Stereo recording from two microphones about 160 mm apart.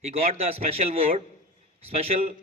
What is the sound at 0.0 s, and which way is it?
A man's voice, 40° right (ahead or behind).